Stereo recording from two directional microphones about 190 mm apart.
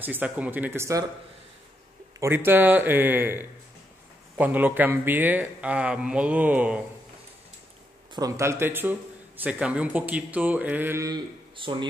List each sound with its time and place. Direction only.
0.0 s a man's voice: 10° right (ahead or behind)
2.1 s a man's voice: 15° right (ahead or behind)
8.1 s a man's voice: 20° right (ahead or behind)
11.5 s speech: 25° right (ahead or behind)